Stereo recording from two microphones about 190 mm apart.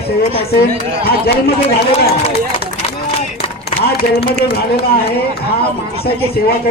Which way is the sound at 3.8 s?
55° left (ahead or behind).